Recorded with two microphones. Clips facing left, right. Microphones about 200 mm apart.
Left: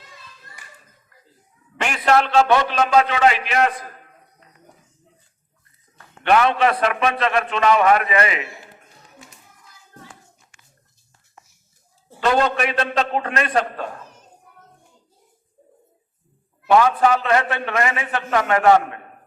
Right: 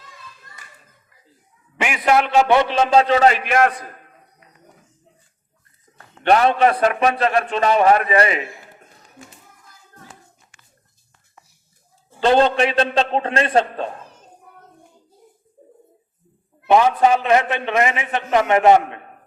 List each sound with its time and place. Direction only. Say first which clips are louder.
1.8 s a man's voice: right 1 dB; 10° right (ahead or behind); by 3.4 s 40° right (ahead or behind)
3.4 s a man's voice: right 3 dB; 50° right (ahead or behind)
6.2 s a man's voice: right 2 dB; 35° right (ahead or behind)
12.2 s a man's voice: right 4 dB; 30° right (ahead or behind)
16.6 s a man's voice: right 1 dB; 20° right (ahead or behind)